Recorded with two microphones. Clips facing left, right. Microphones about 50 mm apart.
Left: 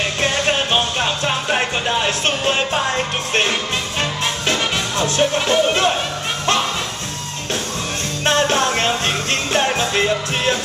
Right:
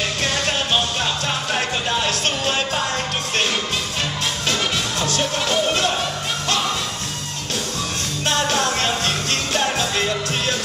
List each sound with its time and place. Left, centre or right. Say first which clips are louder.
0.2 s music: left 6 dB; left
4.5 s music: left 2 dB; left
8.3 s music: left 4 dB; left